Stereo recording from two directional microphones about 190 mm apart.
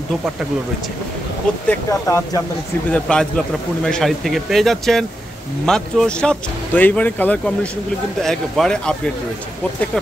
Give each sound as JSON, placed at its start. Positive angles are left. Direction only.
{"t": 1.7, "sound": "speech", "side_deg": 15}
{"t": 2.9, "sound": "speech", "side_deg": 5}